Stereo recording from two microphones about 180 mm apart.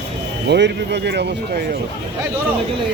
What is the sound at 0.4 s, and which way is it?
Speech, 70° right (ahead or behind).